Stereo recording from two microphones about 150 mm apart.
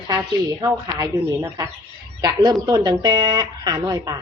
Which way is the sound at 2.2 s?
25° right (ahead or behind).